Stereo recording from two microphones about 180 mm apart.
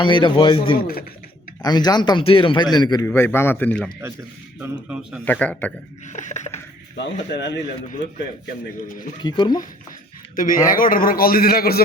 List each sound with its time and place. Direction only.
0.0 s a man's voice: 25° left (ahead or behind)
0.8 s a man's voice: 55° left (ahead or behind)
1.6 s a man's voice: 25° left (ahead or behind); by 3.9 s 5° left (ahead or behind)
4.6 s a man's voice: 5° right (ahead or behind)
5.2 s speech: 10° left (ahead or behind)
6.1 s a sound: 40° left (ahead or behind)
6.9 s speech: 75° left (ahead or behind)
9.2 s a man's voice: 25° left (ahead or behind)
10.3 s a man's voice: 50° left (ahead or behind)